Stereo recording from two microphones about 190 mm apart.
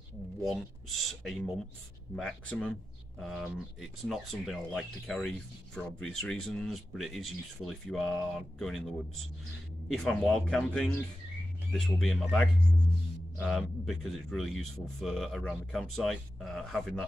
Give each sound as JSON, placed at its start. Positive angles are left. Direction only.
{"t": 0.5, "sound": "a man's voice", "side_deg": 0}
{"t": 10.0, "sound": "a man's voice", "side_deg": 0}